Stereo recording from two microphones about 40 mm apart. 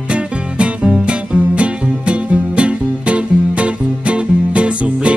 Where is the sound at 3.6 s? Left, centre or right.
Right.